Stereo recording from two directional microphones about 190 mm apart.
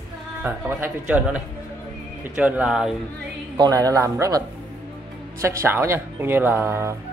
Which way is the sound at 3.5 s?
20° right (ahead or behind).